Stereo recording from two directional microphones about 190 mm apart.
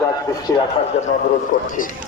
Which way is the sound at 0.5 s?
15° left (ahead or behind).